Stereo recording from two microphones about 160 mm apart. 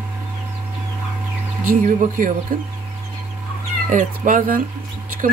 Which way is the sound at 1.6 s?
55° right (ahead or behind).